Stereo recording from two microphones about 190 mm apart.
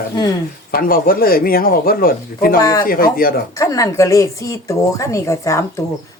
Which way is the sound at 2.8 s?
50° left (ahead or behind).